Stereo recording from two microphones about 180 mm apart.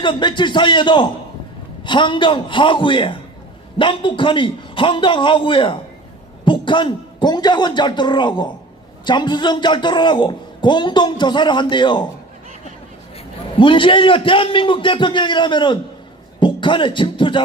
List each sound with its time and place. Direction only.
0.0 s a man's voice: 25° left (ahead or behind)
13.6 s a man's voice: 30° left (ahead or behind)